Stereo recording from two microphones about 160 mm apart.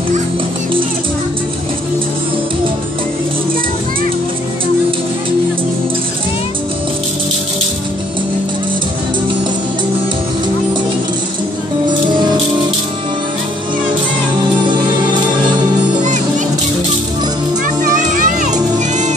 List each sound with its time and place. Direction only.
18.1 s music: 55° right (ahead or behind)